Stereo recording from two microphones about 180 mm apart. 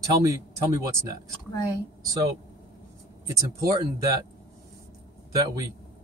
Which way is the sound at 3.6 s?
20° right (ahead or behind).